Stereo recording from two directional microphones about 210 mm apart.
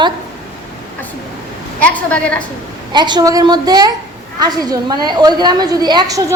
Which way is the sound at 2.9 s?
20° right (ahead or behind).